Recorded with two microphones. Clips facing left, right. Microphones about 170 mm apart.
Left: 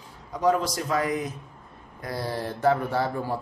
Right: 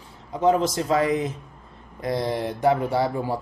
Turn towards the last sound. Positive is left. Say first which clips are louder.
# right 3 dB
turn(degrees=-15)  # may be behind; listen again after turning